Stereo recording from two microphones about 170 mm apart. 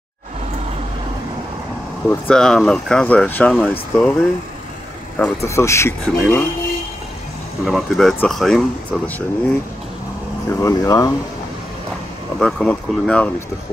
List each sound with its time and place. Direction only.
2.2 s speech: 5° left (ahead or behind)
5.4 s speech: 15° left (ahead or behind)
7.6 s speech: centre (ahead or behind)
10.5 s speech: 20° left (ahead or behind)
12.4 s speech: 5° left (ahead or behind)